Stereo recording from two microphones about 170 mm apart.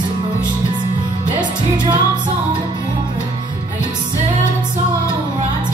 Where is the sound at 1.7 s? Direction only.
25° right (ahead or behind).